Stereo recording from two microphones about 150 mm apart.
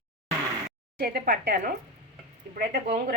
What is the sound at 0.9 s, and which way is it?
A woman's voice, 85° right.